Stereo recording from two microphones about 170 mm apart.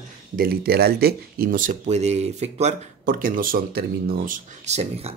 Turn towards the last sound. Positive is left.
turn(degrees=-40)  # may be behind; listen again after turning